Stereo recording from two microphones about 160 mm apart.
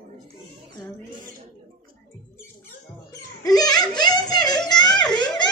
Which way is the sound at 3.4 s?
25° left (ahead or behind).